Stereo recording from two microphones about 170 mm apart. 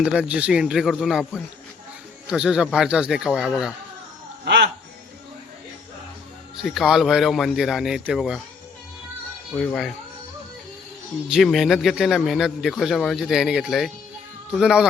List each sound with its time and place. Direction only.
0.0 s a man's voice: 5° right (ahead or behind)
4.4 s a sound: 90° right
6.6 s a man's voice: centre (ahead or behind)
9.6 s a man's voice: 5° left (ahead or behind)
11.3 s a man's voice: centre (ahead or behind)